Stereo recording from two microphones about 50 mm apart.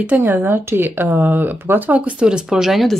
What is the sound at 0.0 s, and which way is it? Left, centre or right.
Speech, right.